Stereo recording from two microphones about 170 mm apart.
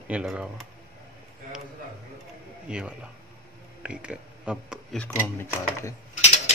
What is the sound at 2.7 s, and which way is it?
Speech, 5° right (ahead or behind).